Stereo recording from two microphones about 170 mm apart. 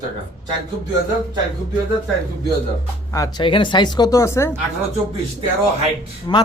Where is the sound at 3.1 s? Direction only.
20° left (ahead or behind).